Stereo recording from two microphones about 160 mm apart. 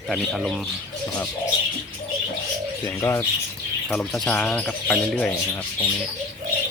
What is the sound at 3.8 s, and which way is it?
Speech, 5° left (ahead or behind).